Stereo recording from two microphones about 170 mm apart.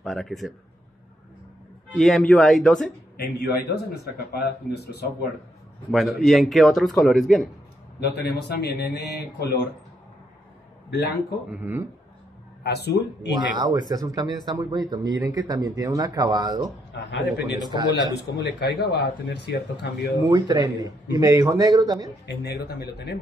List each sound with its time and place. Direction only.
0.0 s a man's voice: centre (ahead or behind)
2.0 s a man's voice: centre (ahead or behind)
3.2 s speech: 70° left (ahead or behind)
5.9 s a man's voice: centre (ahead or behind)
8.2 s speech: 75° left (ahead or behind)
10.9 s a man's voice: 75° left (ahead or behind)
11.4 s speech: 10° right (ahead or behind)
12.6 s speech: 75° left (ahead or behind)
13.6 s speech: 25° right (ahead or behind)
16.9 s a man's voice: 90° left
17.6 s speech: 25° right (ahead or behind)
18.4 s speech: 75° left (ahead or behind)
20.2 s speech: 25° right (ahead or behind)
22.2 s speech: 85° left